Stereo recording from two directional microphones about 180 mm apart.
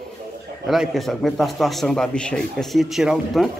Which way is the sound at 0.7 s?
Centre (ahead or behind).